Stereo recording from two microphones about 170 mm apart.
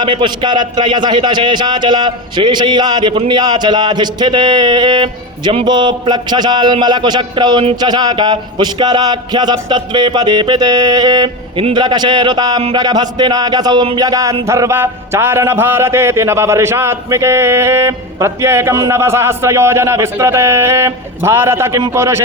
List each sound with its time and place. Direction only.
0.0 s a man's voice: 30° right (ahead or behind)